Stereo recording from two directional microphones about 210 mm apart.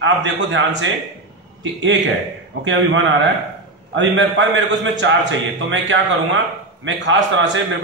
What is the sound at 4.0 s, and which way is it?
A man's voice, 60° right (ahead or behind).